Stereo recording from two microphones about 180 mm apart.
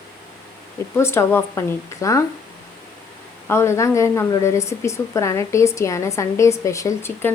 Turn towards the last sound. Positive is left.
turn(degrees=15)  # may be behind; listen again after turning